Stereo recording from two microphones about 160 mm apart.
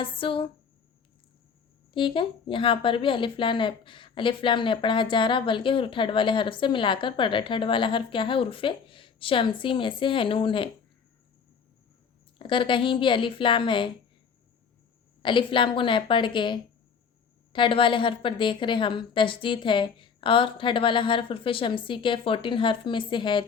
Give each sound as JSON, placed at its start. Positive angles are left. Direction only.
{"t": 0.0, "sound": "speech", "side_deg": 35}
{"t": 1.9, "sound": "speech", "side_deg": 30}
{"t": 12.4, "sound": "speech", "side_deg": 30}
{"t": 15.2, "sound": "speech", "side_deg": 30}